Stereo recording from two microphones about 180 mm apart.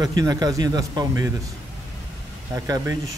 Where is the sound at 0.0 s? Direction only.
20° right (ahead or behind).